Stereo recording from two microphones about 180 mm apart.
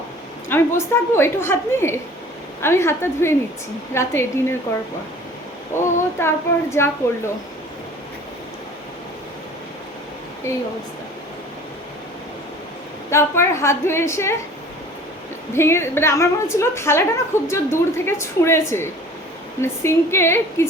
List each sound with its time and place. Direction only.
0.4 s a woman's voice: 15° left (ahead or behind)
5.8 s a woman's voice: 15° left (ahead or behind)
10.5 s a woman's voice: 15° left (ahead or behind)
13.1 s a woman's voice: 15° left (ahead or behind)
15.5 s a woman's voice: 15° left (ahead or behind)